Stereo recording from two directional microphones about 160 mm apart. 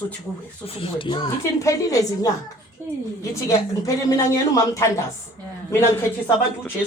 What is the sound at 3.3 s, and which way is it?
A woman's voice, 20° left (ahead or behind).